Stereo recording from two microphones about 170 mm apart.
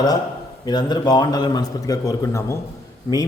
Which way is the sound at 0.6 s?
25° left (ahead or behind).